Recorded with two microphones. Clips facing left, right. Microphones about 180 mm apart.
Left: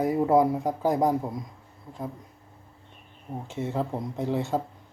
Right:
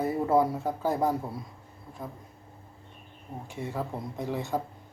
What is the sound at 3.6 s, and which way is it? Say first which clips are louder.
Speech: left 5 dB; 20° left (ahead or behind).